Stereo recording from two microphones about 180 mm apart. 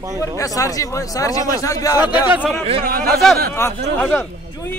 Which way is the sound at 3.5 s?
15° left (ahead or behind).